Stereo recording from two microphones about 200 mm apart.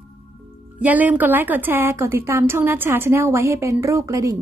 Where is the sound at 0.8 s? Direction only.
10° right (ahead or behind).